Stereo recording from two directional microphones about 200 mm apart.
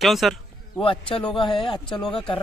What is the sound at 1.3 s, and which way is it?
Speech, 25° left (ahead or behind).